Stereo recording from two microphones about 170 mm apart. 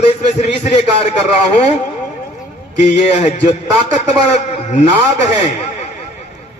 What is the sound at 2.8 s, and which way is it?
A man's voice, 40° left (ahead or behind).